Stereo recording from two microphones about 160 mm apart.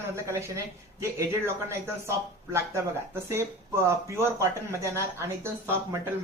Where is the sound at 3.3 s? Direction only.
15° right (ahead or behind).